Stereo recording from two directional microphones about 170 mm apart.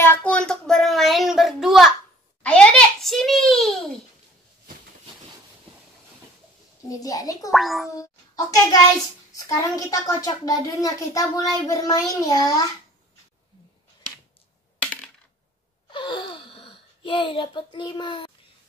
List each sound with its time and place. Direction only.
0.0 s a sound: 10° left (ahead or behind)
6.9 s a woman's voice: 20° left (ahead or behind)
7.5 s speech: centre (ahead or behind)
7.9 s a sound: 20° left (ahead or behind)
9.3 s a woman's voice: 20° left (ahead or behind)
14.8 s coin: 10° left (ahead or behind)
15.9 s sigh: 30° left (ahead or behind)